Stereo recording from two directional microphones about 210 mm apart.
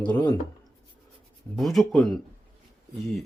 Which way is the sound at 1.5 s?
Centre (ahead or behind).